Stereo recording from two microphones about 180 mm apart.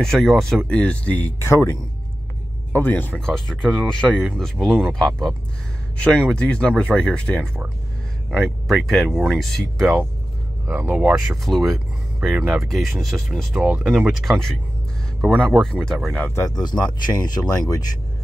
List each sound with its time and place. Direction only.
0.0 s speech: centre (ahead or behind)
10.7 s speech: 10° right (ahead or behind); by 17.8 s 20° left (ahead or behind)